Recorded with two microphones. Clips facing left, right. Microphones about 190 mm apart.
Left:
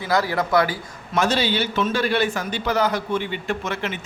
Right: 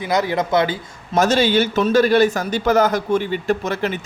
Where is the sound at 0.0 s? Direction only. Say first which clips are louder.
Right 2 dB; 20° right (ahead or behind).